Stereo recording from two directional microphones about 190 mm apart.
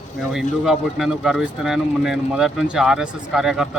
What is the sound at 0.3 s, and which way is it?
Speech, centre (ahead or behind).